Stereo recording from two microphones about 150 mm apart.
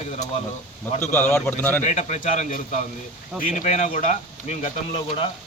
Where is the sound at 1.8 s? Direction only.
55° left (ahead or behind).